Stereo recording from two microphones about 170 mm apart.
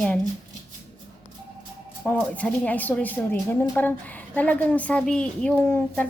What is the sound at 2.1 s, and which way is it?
A woman's voice, 10° left (ahead or behind).